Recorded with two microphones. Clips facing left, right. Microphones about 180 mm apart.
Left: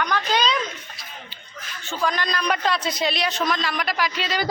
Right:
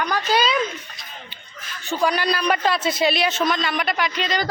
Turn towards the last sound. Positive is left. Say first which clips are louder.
# right 1 dB
turn(degrees=5)  # may be behind; listen again after turning